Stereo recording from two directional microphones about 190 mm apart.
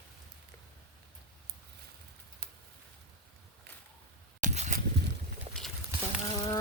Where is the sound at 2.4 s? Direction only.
55° right (ahead or behind).